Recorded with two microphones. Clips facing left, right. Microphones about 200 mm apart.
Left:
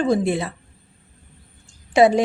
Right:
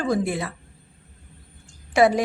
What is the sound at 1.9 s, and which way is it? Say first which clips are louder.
Speech: left 3 dB; 25° left (ahead or behind).